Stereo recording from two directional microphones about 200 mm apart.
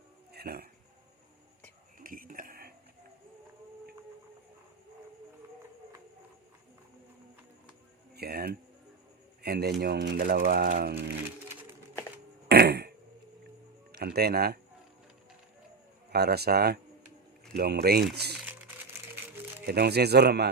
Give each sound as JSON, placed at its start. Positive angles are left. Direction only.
{"t": 0.3, "sound": "speech", "side_deg": -50}
{"t": 2.0, "sound": "dishes", "side_deg": -45}
{"t": 8.1, "sound": "a sound", "side_deg": -50}
{"t": 9.4, "sound": "speech", "side_deg": -50}
{"t": 12.5, "sound": "fart", "side_deg": -55}
{"t": 13.9, "sound": "speech", "side_deg": -50}
{"t": 16.0, "sound": "speech", "side_deg": -55}
{"t": 19.6, "sound": "speech", "side_deg": -55}